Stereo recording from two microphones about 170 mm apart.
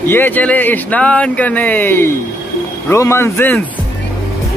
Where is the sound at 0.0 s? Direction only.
10° left (ahead or behind).